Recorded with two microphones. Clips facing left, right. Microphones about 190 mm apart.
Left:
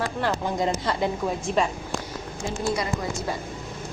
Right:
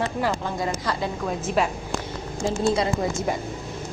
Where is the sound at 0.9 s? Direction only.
25° left (ahead or behind).